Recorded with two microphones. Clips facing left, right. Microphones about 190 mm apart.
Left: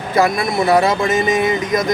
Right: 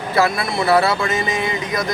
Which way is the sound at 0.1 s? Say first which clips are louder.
Left 3 dB; 15° left (ahead or behind).